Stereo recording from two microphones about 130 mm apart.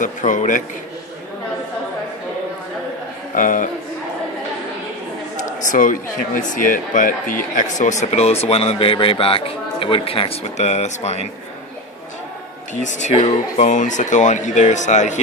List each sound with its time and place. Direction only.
0.0 s speech: 75° left (ahead or behind)
3.3 s a man's voice: 90° left
5.6 s speech: 85° left; by 11.2 s 55° left (ahead or behind)
12.8 s speech: 60° left (ahead or behind)